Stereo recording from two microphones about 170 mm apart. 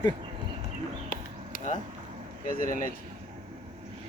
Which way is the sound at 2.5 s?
55° left (ahead or behind).